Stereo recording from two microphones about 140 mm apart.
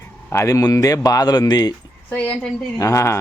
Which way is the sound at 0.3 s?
20° left (ahead or behind).